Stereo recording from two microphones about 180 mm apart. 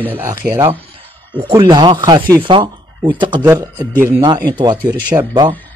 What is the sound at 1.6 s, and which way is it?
Speech, 25° right (ahead or behind).